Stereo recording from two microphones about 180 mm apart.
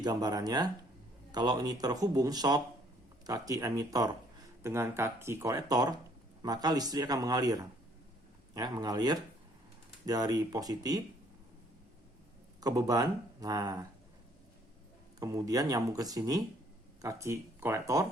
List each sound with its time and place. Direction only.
0.0 s speech: 20° right (ahead or behind)
12.5 s speech: 20° right (ahead or behind)
15.2 s speech: 20° right (ahead or behind)